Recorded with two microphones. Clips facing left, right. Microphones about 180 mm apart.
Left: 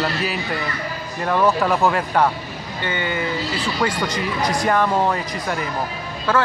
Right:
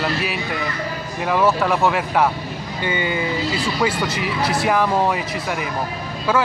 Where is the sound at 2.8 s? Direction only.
15° right (ahead or behind).